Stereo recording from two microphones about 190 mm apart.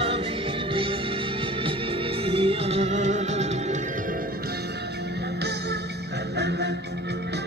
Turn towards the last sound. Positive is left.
turn(degrees=-65)  # may be behind; listen again after turning